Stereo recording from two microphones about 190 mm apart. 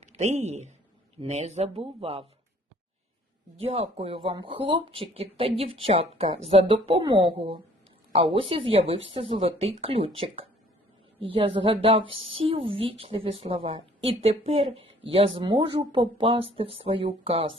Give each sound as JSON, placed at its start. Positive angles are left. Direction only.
{"t": 0.0, "sound": "speech", "side_deg": -35}
{"t": 3.7, "sound": "a woman's voice", "side_deg": -30}